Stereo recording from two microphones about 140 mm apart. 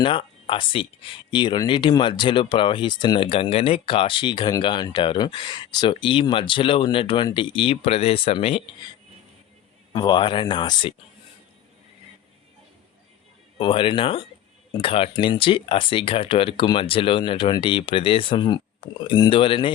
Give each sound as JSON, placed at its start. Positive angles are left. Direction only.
{"t": 0.0, "sound": "speech", "side_deg": 40}
{"t": 9.9, "sound": "speech", "side_deg": 30}
{"t": 13.6, "sound": "speech", "side_deg": 35}